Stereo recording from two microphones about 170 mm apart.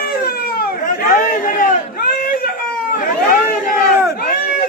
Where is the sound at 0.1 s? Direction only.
65° left (ahead or behind).